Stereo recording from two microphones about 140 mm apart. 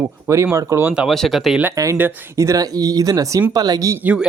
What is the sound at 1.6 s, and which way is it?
Speech, 25° right (ahead or behind).